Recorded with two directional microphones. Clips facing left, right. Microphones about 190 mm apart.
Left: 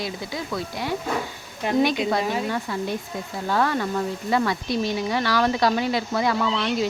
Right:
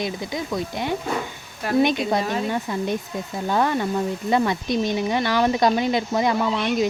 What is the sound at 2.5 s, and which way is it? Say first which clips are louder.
Speech: right 2 dB; 20° right (ahead or behind).